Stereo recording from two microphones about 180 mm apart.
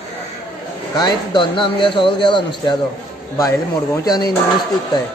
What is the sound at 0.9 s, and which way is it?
Speech, 25° left (ahead or behind).